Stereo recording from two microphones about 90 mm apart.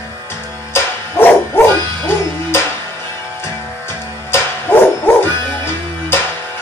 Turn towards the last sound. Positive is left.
turn(degrees=25)  # may be behind; listen again after turning